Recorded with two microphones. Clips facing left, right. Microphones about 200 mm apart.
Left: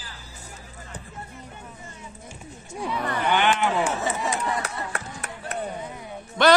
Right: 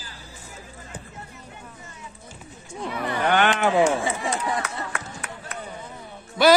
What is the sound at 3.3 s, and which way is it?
Speech, 55° right (ahead or behind).